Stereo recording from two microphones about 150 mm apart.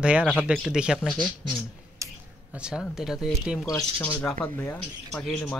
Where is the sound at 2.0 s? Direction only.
20° right (ahead or behind).